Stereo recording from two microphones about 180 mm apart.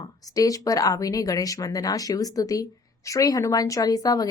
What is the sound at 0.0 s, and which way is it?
Speech, 20° left (ahead or behind).